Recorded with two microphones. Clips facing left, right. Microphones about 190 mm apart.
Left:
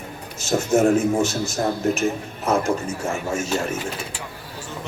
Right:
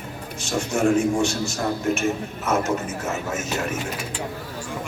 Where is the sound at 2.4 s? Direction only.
30° left (ahead or behind).